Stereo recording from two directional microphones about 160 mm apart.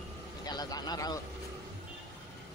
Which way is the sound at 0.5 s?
25° left (ahead or behind).